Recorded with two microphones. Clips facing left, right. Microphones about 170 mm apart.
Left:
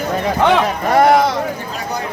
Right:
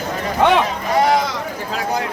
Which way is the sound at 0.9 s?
55° left (ahead or behind).